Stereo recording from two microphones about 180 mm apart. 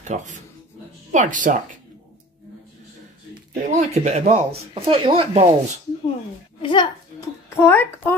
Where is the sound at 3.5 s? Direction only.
40° right (ahead or behind).